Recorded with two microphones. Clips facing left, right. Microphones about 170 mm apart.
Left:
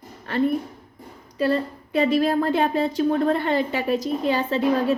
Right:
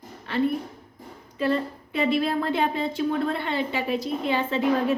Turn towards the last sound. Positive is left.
turn(degrees=40)  # may be behind; listen again after turning